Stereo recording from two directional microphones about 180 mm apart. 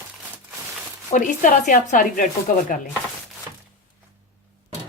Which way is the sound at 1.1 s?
45° left (ahead or behind).